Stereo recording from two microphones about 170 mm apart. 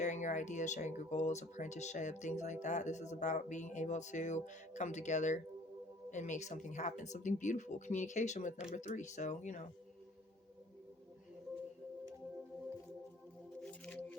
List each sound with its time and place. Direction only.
0.0 s speech: 45° left (ahead or behind)
13.6 s music: 5° left (ahead or behind)